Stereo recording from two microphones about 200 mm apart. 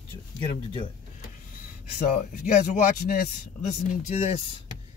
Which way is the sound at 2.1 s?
40° left (ahead or behind).